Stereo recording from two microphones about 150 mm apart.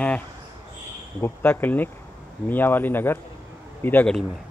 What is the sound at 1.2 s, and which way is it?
Speech, 15° left (ahead or behind).